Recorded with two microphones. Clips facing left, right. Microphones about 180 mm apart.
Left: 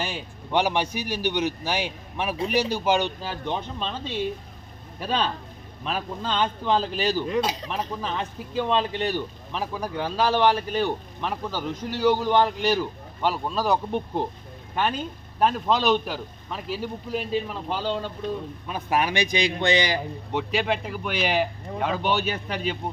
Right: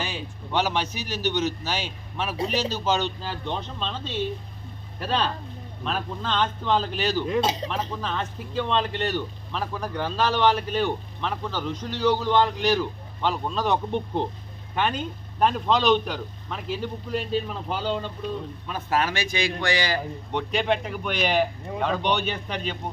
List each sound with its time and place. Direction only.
0.5 s a man's voice: 15° left (ahead or behind)
5.8 s a man's voice: 10° left (ahead or behind)
18.7 s a man's voice: 15° left (ahead or behind)
20.3 s speech: 5° left (ahead or behind)